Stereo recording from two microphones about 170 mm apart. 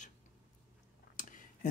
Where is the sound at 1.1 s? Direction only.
50° left (ahead or behind).